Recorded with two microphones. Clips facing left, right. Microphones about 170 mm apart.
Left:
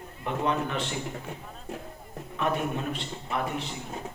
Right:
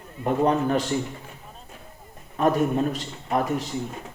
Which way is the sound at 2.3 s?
40° right (ahead or behind).